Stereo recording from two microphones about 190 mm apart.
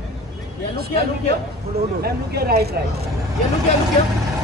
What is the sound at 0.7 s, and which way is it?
Speech, 55° right (ahead or behind).